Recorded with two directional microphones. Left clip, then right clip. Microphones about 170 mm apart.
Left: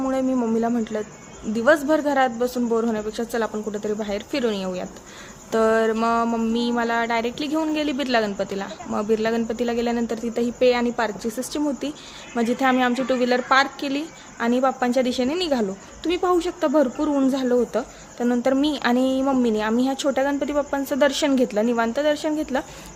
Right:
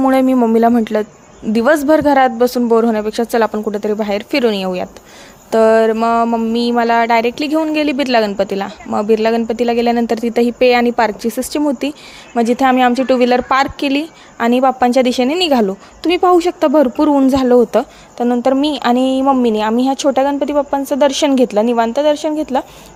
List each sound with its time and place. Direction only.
0.0 s speech: 50° right (ahead or behind); by 6.6 s 25° right (ahead or behind)
6.6 s speech: 40° right (ahead or behind)
18.3 s speech: 30° right (ahead or behind)